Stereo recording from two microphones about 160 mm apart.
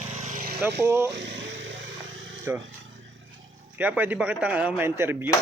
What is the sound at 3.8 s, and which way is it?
Speech, 10° right (ahead or behind).